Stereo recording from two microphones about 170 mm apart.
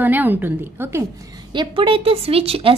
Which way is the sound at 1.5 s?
30° right (ahead or behind).